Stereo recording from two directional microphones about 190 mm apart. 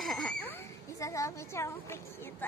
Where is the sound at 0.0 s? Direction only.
Centre (ahead or behind).